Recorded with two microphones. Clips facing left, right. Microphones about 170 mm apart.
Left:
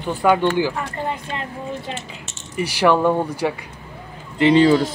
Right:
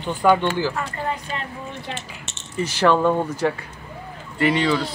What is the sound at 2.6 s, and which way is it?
Speech, 10° left (ahead or behind).